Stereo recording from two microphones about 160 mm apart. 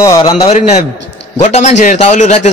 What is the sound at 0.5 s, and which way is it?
A man's voice, 45° left (ahead or behind).